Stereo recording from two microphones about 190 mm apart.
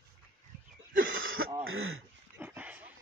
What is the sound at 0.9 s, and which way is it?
Throat clearing, 85° right.